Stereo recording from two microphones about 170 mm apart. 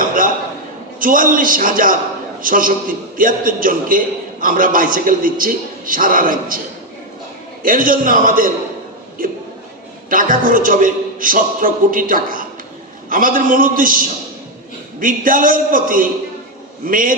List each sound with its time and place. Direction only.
0.0 s a sound: 55° right (ahead or behind)
0.9 s a man's voice: 55° right (ahead or behind)
7.6 s a man's voice: 55° right (ahead or behind)